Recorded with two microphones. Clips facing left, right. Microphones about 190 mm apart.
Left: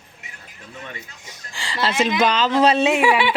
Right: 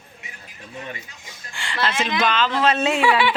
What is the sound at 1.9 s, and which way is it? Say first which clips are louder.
Speech: left 7 dB; 10° left (ahead or behind).